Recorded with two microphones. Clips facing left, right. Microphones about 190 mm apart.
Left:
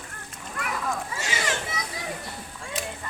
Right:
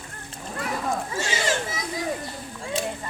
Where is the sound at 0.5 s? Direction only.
30° right (ahead or behind).